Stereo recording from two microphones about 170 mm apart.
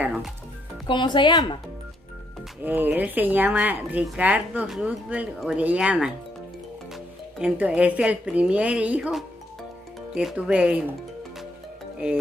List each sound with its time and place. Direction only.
0.0 s music: 10° right (ahead or behind)
0.8 s speech: 30° left (ahead or behind)
2.6 s speech: 10° right (ahead or behind)